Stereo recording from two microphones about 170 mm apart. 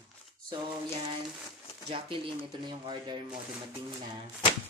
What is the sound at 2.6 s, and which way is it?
Speech, 25° right (ahead or behind).